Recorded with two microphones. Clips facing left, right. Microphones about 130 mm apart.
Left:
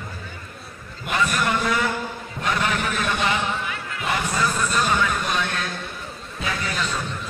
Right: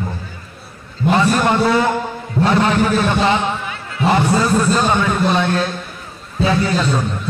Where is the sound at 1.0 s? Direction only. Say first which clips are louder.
Right 9 dB; 30° right (ahead or behind).